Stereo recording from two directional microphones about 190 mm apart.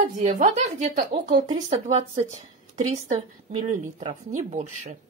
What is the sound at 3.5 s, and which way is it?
Speech, 35° right (ahead or behind).